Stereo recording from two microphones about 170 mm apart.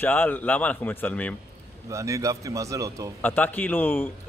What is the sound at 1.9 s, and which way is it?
A man's voice, 20° right (ahead or behind).